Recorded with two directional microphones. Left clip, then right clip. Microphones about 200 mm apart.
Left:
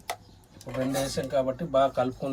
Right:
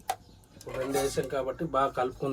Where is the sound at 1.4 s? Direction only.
35° right (ahead or behind).